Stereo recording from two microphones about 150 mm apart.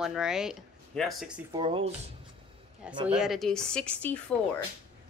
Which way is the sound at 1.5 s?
35° right (ahead or behind).